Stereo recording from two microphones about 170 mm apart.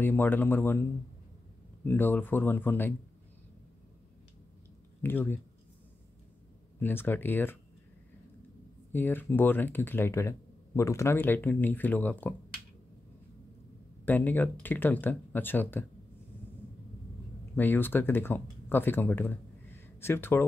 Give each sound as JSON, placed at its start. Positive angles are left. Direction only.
{"t": 0.0, "sound": "speech", "side_deg": 10}
{"t": 1.9, "sound": "speech", "side_deg": 10}
{"t": 5.0, "sound": "speech", "side_deg": 10}
{"t": 6.8, "sound": "speech", "side_deg": 10}
{"t": 8.9, "sound": "speech", "side_deg": 10}
{"t": 14.0, "sound": "speech", "side_deg": 10}
{"t": 17.6, "sound": "speech", "side_deg": 10}